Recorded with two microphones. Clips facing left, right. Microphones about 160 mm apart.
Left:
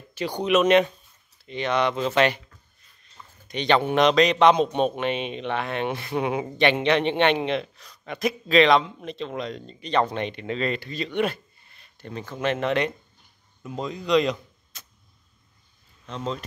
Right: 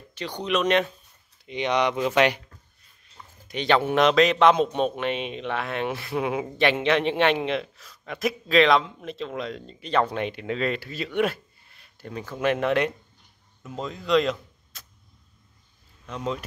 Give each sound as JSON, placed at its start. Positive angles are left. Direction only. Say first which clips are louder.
{"t": 0.1, "sound": "speech", "louder": "left 5 dB", "side_deg": 10}
{"t": 1.4, "sound": "speech", "louder": "even", "side_deg": -15}
{"t": 3.4, "sound": "speech", "louder": "left 1 dB", "side_deg": -5}
{"t": 16.1, "sound": "speech", "louder": "right 1 dB", "side_deg": -10}